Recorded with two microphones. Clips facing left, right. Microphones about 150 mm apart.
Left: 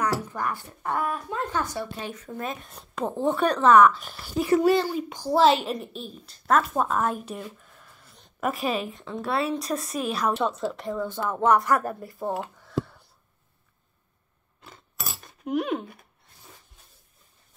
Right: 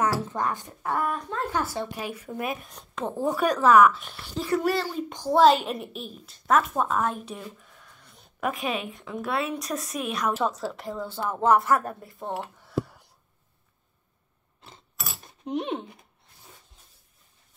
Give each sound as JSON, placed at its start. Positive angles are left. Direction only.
{"t": 0.2, "sound": "speech", "side_deg": -20}
{"t": 0.8, "sound": "speech", "side_deg": 0}
{"t": 1.8, "sound": "speech", "side_deg": -15}
{"t": 2.6, "sound": "speech", "side_deg": 0}
{"t": 4.4, "sound": "a child's voice", "side_deg": 15}
{"t": 5.1, "sound": "a woman's voice", "side_deg": 5}
{"t": 11.4, "sound": "speech", "side_deg": -30}
{"t": 11.7, "sound": "speech", "side_deg": 0}
{"t": 12.6, "sound": "a sound", "side_deg": -10}
{"t": 14.7, "sound": "a sound", "side_deg": -25}